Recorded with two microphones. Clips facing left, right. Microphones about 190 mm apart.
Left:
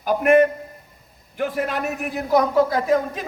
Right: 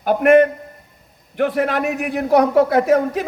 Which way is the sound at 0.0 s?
60° right (ahead or behind).